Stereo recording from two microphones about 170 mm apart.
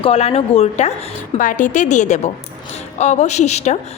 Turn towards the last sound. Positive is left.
turn(degrees=40)  # may be behind; listen again after turning